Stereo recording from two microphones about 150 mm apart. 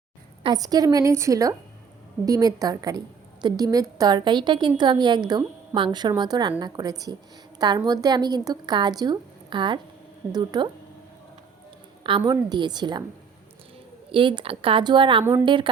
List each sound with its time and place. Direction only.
0.4 s a woman's voice: 25° right (ahead or behind)
12.0 s a woman's voice: 30° right (ahead or behind)
14.1 s a woman's voice: 35° right (ahead or behind)
15.2 s a woman's voice: 15° right (ahead or behind)
15.4 s a woman's voice: 35° right (ahead or behind)